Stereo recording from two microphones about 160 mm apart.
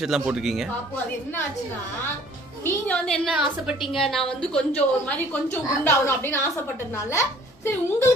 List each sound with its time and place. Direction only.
0.0 s a woman's voice: 5° right (ahead or behind)
2.6 s a woman's voice: 10° left (ahead or behind)
3.3 s a woman's voice: 5° right (ahead or behind); by 8.1 s 15° left (ahead or behind)